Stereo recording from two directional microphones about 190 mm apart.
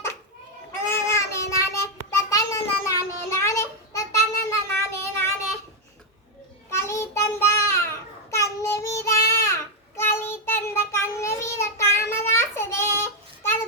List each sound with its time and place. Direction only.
0.9 s child singing: 15° left (ahead or behind)
6.7 s child singing: 15° left (ahead or behind)